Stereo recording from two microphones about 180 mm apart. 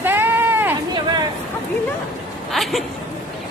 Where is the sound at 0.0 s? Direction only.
10° right (ahead or behind).